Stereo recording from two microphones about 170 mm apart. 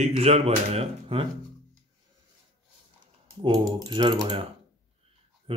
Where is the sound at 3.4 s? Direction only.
25° right (ahead or behind).